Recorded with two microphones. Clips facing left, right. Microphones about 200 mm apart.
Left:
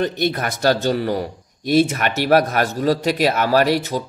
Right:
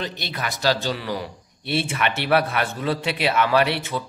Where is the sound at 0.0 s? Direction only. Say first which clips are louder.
Left 9 dB; 50° left (ahead or behind).